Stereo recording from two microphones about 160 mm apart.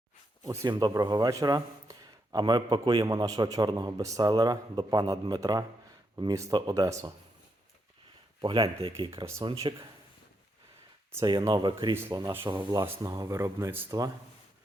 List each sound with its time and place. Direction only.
0.4 s a man's voice: 20° right (ahead or behind)
8.4 s speech: 35° right (ahead or behind)
9.0 s speech: 15° right (ahead or behind)
9.4 s speech: 30° right (ahead or behind)
11.3 s a man's voice: 25° right (ahead or behind)